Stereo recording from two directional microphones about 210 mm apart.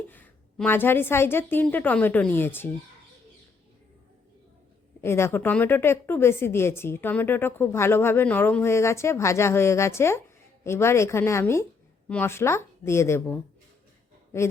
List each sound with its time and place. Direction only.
0.1 s a woman's voice: 10° left (ahead or behind)
4.9 s a woman's voice: 10° left (ahead or behind)